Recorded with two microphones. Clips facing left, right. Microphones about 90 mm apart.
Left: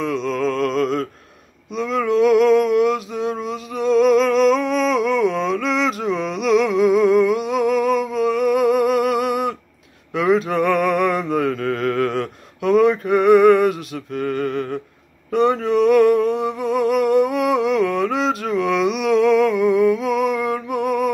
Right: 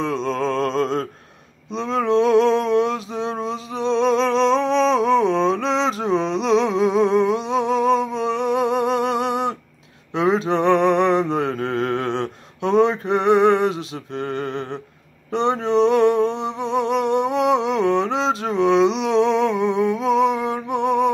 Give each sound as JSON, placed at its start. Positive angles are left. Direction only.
{"t": 0.0, "sound": "mantra", "side_deg": -35}
{"t": 1.7, "sound": "male singing", "side_deg": -30}
{"t": 10.1, "sound": "mantra", "side_deg": -30}
{"t": 15.3, "sound": "humming", "side_deg": -25}